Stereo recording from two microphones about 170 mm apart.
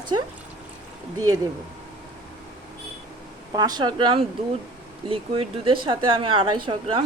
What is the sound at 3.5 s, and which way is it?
Speech, 25° right (ahead or behind).